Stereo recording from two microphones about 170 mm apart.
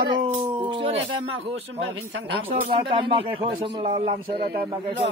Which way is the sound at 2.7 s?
30° right (ahead or behind).